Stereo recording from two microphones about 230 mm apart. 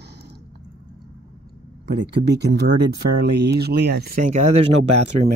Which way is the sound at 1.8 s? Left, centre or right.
Right.